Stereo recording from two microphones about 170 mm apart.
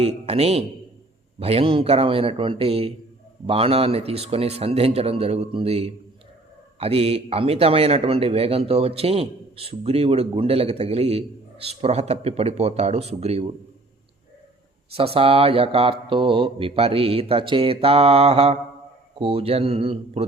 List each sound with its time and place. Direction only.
0.0 s speech: 35° right (ahead or behind)
14.9 s speech: 35° right (ahead or behind)